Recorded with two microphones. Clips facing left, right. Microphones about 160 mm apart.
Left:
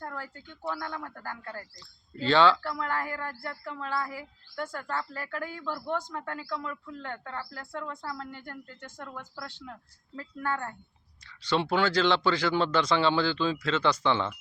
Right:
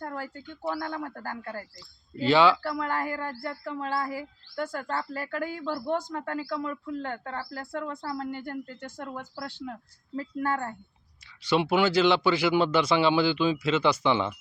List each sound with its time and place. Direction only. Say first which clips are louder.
0.0 s a sound: right 4 dB; 35° right (ahead or behind)
0.7 s speech: right 4 dB; 35° right (ahead or behind)
2.1 s speech: right 1 dB; 10° right (ahead or behind)
2.6 s speech: right 3 dB; 35° right (ahead or behind)
7.8 s speech: right 3 dB; 25° right (ahead or behind)
8.2 s speech: right 8 dB; 35° right (ahead or behind)
11.4 s speech: right 3 dB; 10° right (ahead or behind)